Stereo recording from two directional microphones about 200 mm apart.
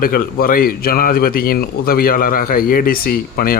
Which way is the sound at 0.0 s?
45° left (ahead or behind).